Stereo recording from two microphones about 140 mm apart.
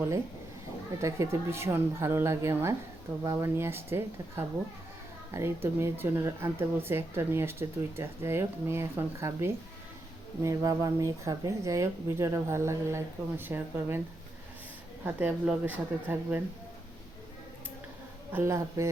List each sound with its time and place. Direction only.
1.0 s speech: 20° right (ahead or behind)
15.0 s speech: 15° right (ahead or behind)
18.3 s speech: 15° right (ahead or behind)